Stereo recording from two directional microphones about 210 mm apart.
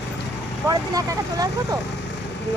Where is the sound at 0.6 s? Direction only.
15° right (ahead or behind).